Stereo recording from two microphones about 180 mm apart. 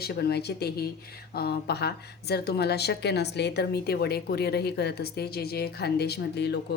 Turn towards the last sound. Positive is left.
turn(degrees=65)  # may be behind; listen again after turning